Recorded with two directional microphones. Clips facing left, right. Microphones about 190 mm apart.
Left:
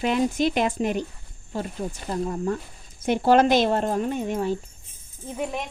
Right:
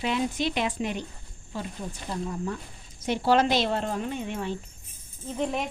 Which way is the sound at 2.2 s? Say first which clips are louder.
Left 7 dB; 45° left (ahead or behind).